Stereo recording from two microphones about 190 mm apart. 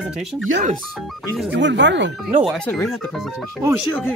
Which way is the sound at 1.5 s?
70° right (ahead or behind).